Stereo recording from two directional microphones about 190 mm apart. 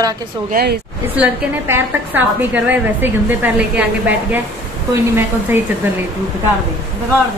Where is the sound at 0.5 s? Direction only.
55° right (ahead or behind).